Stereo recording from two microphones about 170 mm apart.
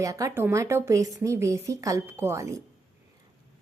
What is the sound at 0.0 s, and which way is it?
Speech, 20° right (ahead or behind).